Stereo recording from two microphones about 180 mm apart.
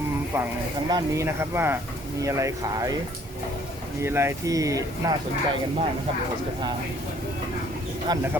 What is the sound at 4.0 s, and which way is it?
Speech, 15° right (ahead or behind).